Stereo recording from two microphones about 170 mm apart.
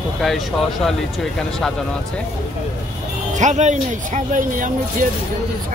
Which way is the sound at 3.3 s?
45° right (ahead or behind).